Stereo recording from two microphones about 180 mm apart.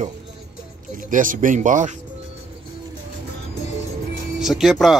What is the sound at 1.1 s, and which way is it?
Speech, 45° right (ahead or behind).